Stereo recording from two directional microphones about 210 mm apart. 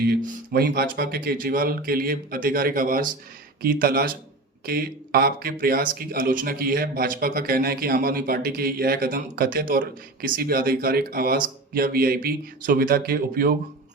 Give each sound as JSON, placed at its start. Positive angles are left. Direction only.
{"t": 0.1, "sound": "speech", "side_deg": -45}